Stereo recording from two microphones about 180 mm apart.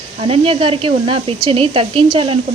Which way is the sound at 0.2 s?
35° right (ahead or behind).